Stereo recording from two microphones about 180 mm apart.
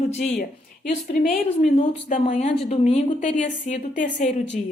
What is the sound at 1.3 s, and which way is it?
A woman's voice, 40° left (ahead or behind).